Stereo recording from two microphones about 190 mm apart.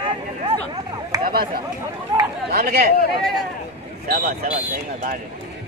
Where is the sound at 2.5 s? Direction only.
55° right (ahead or behind).